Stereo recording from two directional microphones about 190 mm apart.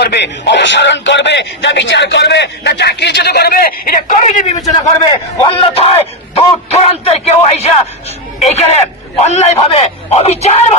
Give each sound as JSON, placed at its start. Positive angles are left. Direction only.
{"t": 0.0, "sound": "speech", "side_deg": 65}
{"t": 5.0, "sound": "a man's voice", "side_deg": 25}